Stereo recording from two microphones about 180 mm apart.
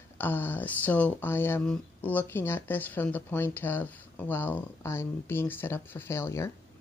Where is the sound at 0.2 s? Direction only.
10° left (ahead or behind).